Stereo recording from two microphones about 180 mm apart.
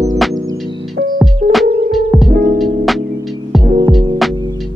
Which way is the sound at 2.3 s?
55° right (ahead or behind).